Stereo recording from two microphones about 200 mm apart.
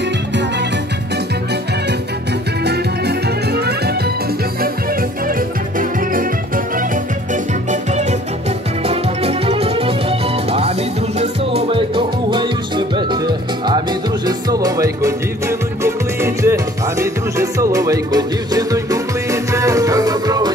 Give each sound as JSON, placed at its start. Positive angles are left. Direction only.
{"t": 2.6, "sound": "music", "side_deg": -55}
{"t": 5.3, "sound": "music", "side_deg": -45}
{"t": 7.7, "sound": "music", "side_deg": -35}